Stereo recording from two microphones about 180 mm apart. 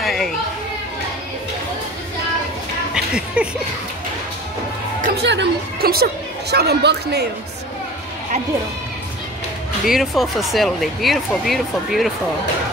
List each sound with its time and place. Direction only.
0.0 s children playing: centre (ahead or behind)
2.9 s music: 5° right (ahead or behind)
5.2 s a woman's voice: 75° right (ahead or behind)
9.8 s speech: centre (ahead or behind)